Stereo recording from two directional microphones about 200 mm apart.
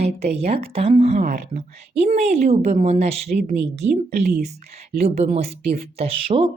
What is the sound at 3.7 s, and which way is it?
Speech, 35° right (ahead or behind).